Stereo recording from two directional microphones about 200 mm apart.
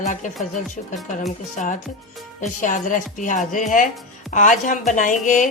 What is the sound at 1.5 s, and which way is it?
Speech, 40° left (ahead or behind).